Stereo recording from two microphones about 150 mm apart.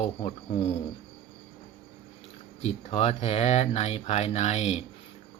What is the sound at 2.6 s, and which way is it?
Speech, 45° left (ahead or behind).